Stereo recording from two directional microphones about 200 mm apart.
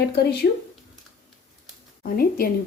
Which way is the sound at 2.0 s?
45° left (ahead or behind).